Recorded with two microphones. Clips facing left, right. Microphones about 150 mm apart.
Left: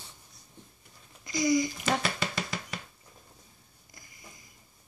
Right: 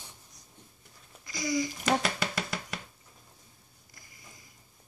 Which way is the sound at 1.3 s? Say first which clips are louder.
Left 5 dB; 20° left (ahead or behind).